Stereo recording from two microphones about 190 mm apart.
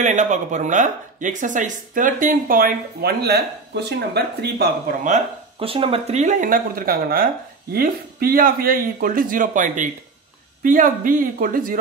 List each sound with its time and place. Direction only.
0.0 s speech: 40° right (ahead or behind)